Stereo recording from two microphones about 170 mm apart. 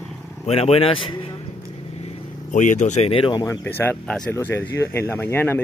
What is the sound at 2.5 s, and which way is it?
Speech, 45° left (ahead or behind).